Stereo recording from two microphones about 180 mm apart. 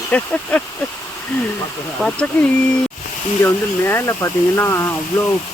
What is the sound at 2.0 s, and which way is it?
Speech, 5° left (ahead or behind).